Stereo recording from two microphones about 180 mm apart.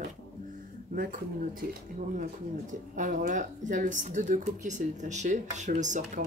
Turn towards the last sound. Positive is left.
turn(degrees=-45)  # may be behind; listen again after turning